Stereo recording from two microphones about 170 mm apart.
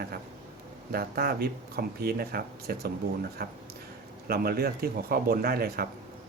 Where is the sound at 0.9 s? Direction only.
65° right (ahead or behind).